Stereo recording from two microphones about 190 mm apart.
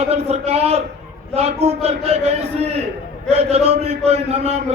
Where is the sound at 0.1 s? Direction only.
35° right (ahead or behind).